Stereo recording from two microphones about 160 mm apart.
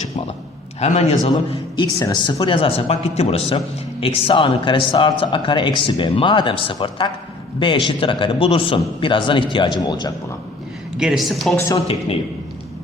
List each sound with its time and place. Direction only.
0.8 s a man's voice: 45° left (ahead or behind)
1.7 s speech: 25° left (ahead or behind)
10.9 s speech: 5° right (ahead or behind)